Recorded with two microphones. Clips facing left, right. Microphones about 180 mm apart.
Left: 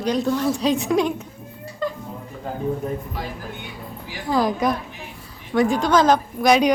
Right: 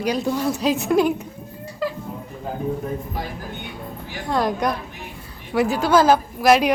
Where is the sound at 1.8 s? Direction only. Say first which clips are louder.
Even; 5° right (ahead or behind).